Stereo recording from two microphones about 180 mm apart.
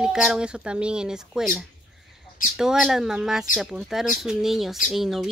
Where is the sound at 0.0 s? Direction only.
5° right (ahead or behind).